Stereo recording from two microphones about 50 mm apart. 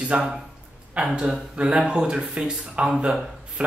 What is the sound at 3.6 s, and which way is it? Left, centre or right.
Speech, right.